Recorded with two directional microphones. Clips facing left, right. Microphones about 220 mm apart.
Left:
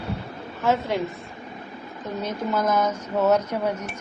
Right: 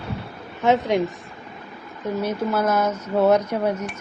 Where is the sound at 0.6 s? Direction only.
15° right (ahead or behind).